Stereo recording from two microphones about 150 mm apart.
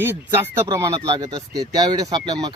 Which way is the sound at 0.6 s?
20° right (ahead or behind).